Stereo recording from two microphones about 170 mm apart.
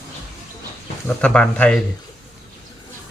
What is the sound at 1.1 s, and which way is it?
Speech, 5° left (ahead or behind).